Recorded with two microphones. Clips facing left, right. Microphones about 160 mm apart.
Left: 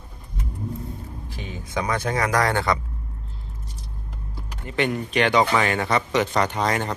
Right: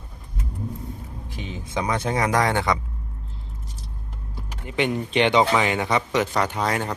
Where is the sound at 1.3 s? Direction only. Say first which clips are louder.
Right 1 dB; 20° right (ahead or behind).